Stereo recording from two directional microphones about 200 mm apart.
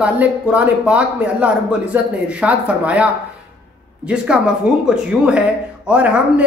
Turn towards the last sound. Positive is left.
turn(degrees=-5)  # may be behind; listen again after turning